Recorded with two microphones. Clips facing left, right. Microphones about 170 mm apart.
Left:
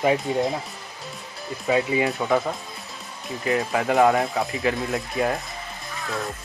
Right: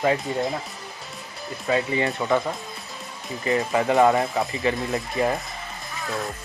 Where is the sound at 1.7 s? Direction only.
Centre (ahead or behind).